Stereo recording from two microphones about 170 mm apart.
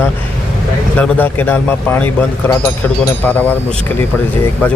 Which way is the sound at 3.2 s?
10° left (ahead or behind).